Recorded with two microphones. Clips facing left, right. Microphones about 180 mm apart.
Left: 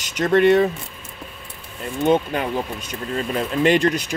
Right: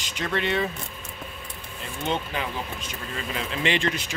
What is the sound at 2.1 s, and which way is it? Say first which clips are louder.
Speech: left 9 dB; 50° left (ahead or behind).